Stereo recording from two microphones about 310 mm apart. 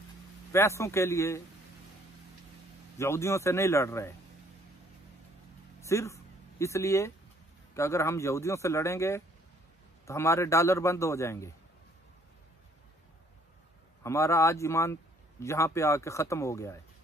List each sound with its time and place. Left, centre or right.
0.5 s speech: centre
3.0 s speech: centre
5.8 s a sound: centre
7.7 s speech: centre
14.0 s speech: centre